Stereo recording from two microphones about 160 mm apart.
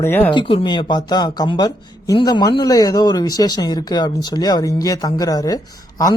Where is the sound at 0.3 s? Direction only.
30° left (ahead or behind).